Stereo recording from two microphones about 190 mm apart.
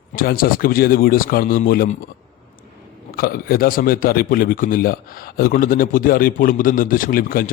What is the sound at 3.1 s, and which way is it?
Speech, 50° left (ahead or behind).